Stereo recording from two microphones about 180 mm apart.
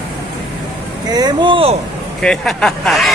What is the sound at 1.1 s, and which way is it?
Speech, 25° right (ahead or behind).